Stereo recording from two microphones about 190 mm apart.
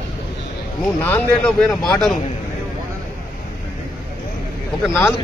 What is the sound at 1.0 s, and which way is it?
Speech, 5° left (ahead or behind).